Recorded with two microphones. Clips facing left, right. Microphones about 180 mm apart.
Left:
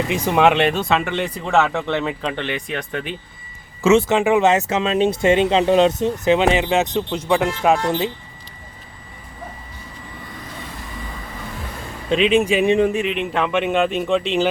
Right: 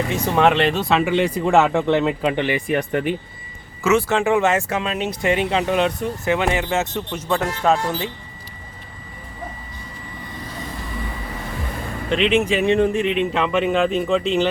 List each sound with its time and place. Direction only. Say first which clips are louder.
0.1 s speech: left 2 dB; 5° left (ahead or behind)
3.8 s speech: left 3 dB; 20° left (ahead or behind)
12.1 s speech: left 2 dB; 15° left (ahead or behind)
13.3 s speech: even; centre (ahead or behind)